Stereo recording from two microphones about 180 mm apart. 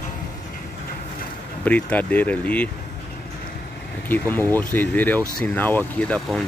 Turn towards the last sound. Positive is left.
turn(degrees=5)  # may be behind; listen again after turning